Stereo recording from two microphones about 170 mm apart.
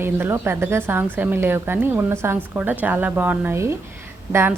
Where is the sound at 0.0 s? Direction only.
15° right (ahead or behind).